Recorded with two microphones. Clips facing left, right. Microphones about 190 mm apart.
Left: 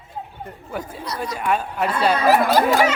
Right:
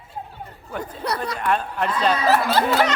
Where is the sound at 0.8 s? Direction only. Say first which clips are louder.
Right 4 dB; 60° right (ahead or behind).